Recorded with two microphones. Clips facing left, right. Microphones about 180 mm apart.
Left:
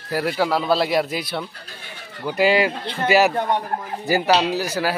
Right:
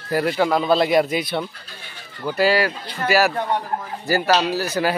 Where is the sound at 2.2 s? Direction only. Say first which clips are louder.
Left 1 dB; 15° left (ahead or behind).